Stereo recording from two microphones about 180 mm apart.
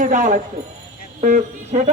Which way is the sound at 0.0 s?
45° right (ahead or behind).